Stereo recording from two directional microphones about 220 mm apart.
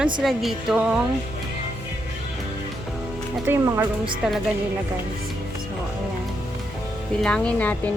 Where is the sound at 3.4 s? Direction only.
10° right (ahead or behind).